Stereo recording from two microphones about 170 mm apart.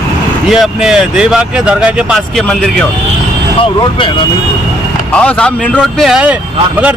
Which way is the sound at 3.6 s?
30° left (ahead or behind).